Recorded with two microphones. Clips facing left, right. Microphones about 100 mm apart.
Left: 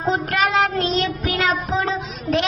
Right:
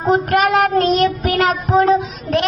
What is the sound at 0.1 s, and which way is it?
Child singing, 50° right (ahead or behind).